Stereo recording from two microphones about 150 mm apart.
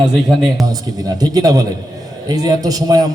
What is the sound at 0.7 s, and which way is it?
A man's voice, 25° right (ahead or behind).